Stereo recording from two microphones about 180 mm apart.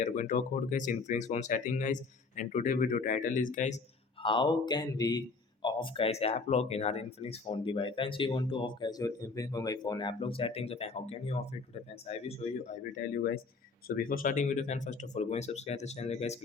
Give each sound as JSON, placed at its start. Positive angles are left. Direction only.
{"t": 0.0, "sound": "speech", "side_deg": 45}
{"t": 4.2, "sound": "speech", "side_deg": 25}
{"t": 13.1, "sound": "speech", "side_deg": 60}